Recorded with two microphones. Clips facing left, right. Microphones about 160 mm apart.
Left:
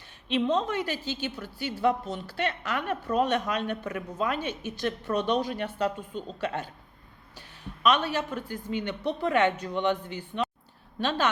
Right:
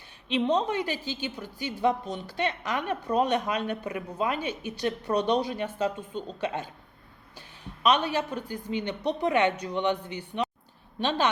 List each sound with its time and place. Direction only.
0.3 s a woman's voice: 15° right (ahead or behind)
6.0 s a woman's voice: 5° left (ahead or behind)
6.4 s a woman's voice: 15° right (ahead or behind)
7.9 s a woman's voice: 15° right (ahead or behind)